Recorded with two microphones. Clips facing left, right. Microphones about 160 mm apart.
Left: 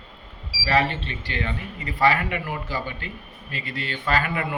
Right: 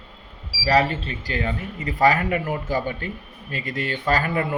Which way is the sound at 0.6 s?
35° right (ahead or behind).